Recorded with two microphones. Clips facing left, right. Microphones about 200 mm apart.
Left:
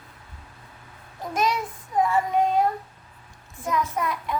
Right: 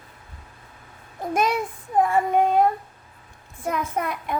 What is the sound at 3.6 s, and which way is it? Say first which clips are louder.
Speech: even; 55° right (ahead or behind).